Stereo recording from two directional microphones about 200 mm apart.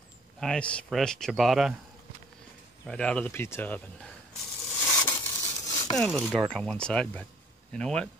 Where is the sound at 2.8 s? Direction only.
5° left (ahead or behind).